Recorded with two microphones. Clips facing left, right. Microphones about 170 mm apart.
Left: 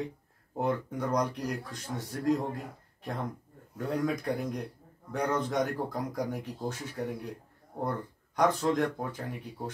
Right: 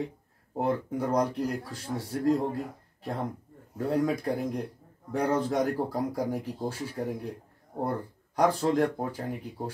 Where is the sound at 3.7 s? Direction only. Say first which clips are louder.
Right 4 dB; 30° right (ahead or behind).